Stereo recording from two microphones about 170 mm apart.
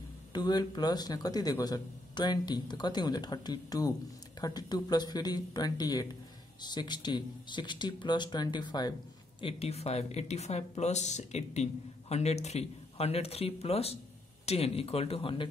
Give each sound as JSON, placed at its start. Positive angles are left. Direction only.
{"t": 0.3, "sound": "speech", "side_deg": 25}